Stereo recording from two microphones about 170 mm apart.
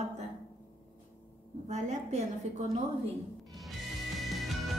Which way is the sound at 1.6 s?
40° right (ahead or behind).